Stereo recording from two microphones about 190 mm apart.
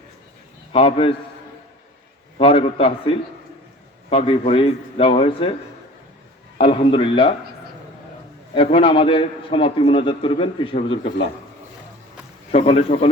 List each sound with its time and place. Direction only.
0.7 s a man's voice: 30° left (ahead or behind)
2.4 s a man's voice: 30° left (ahead or behind)
6.6 s a man's voice: 30° left (ahead or behind)
8.5 s a man's voice: 30° left (ahead or behind)
12.5 s speech: 35° left (ahead or behind)